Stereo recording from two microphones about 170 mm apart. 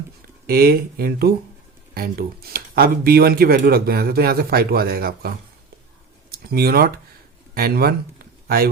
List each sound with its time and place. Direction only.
0.4 s speech: 65° right (ahead or behind)
6.3 s speech: 65° right (ahead or behind)